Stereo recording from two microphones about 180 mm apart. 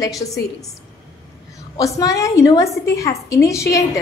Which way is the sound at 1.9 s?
15° left (ahead or behind).